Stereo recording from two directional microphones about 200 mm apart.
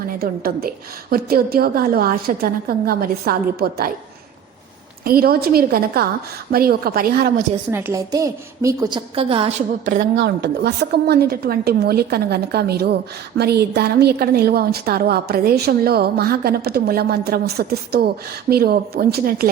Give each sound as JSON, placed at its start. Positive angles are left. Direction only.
{"t": 0.2, "sound": "a woman's voice", "side_deg": -50}
{"t": 5.0, "sound": "a woman's voice", "side_deg": -50}
{"t": 7.7, "sound": "a woman's voice", "side_deg": -10}
{"t": 9.9, "sound": "a woman's voice", "side_deg": -55}